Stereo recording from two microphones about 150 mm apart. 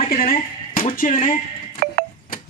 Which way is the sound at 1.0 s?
60° left (ahead or behind).